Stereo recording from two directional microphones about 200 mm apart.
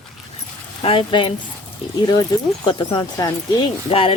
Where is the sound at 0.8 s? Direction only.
25° left (ahead or behind).